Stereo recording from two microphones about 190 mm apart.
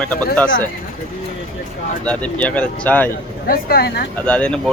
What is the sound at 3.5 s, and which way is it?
Speech, 50° left (ahead or behind).